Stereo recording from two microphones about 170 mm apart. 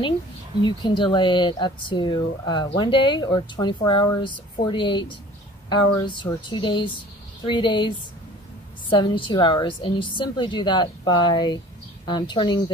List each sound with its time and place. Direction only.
0.6 s speech: 25° left (ahead or behind)
8.9 s speech: 30° left (ahead or behind)